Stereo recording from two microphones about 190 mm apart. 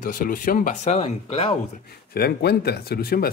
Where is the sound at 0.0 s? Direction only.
45° left (ahead or behind); by 1.5 s 30° left (ahead or behind).